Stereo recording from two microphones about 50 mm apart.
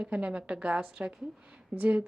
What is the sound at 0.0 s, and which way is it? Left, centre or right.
Speech, right.